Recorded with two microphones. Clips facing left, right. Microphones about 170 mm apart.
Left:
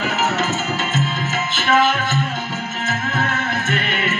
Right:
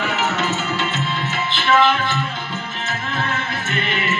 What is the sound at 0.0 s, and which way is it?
Music, 40° left (ahead or behind).